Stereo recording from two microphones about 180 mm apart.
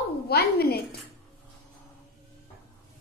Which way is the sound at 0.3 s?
60° left (ahead or behind).